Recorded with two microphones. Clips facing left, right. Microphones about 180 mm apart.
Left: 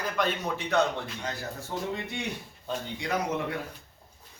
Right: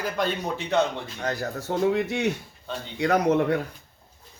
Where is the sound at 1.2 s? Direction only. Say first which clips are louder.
Right 7 dB; 65° right (ahead or behind); by 2.2 s 85° right.